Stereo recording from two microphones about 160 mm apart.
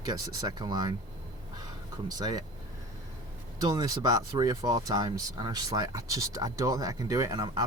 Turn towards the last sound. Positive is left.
turn(degrees=-25)  # may be behind; listen again after turning